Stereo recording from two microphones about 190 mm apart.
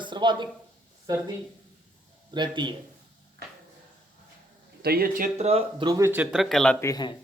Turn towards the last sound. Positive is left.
turn(degrees=20)  # may be behind; listen again after turning